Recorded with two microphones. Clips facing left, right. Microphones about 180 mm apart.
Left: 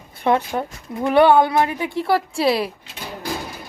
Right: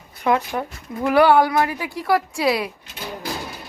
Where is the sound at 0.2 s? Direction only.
30° left (ahead or behind).